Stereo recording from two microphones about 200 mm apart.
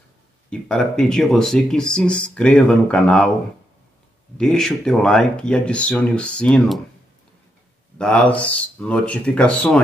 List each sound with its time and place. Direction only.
0.5 s speech: 5° left (ahead or behind)
4.4 s speech: centre (ahead or behind)
8.0 s speech: 5° left (ahead or behind)